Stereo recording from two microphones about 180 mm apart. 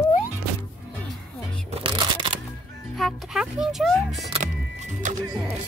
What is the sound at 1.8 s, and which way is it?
Shuffling cards, 25° right (ahead or behind).